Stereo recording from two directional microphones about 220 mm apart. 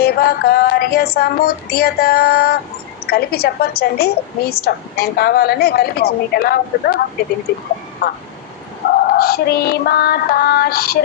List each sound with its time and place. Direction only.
0.0 s a woman's voice: 45° left (ahead or behind)
8.0 s a woman's voice: 50° left (ahead or behind)